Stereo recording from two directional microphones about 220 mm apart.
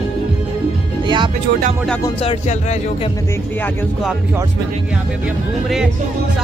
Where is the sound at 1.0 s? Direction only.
20° right (ahead or behind).